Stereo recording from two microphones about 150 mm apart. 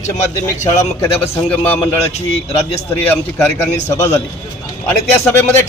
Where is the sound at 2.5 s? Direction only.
45° left (ahead or behind).